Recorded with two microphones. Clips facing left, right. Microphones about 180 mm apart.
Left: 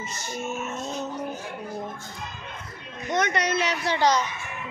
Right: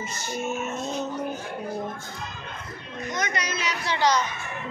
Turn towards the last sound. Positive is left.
turn(degrees=60)  # may be behind; listen again after turning